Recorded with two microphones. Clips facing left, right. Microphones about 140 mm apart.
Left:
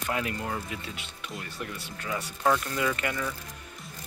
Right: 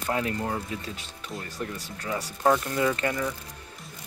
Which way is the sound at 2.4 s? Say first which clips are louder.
Right 3 dB; 25° right (ahead or behind).